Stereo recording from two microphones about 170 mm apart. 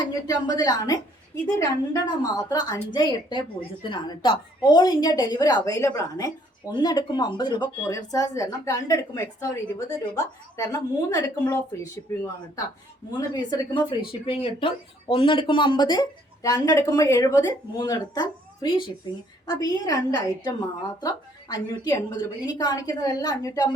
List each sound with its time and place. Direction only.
0.0 s a woman's voice: 25° left (ahead or behind)